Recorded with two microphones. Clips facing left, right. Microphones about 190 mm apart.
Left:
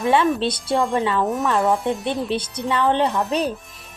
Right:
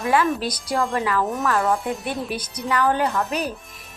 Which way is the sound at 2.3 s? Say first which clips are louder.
Left 2 dB; 25° left (ahead or behind).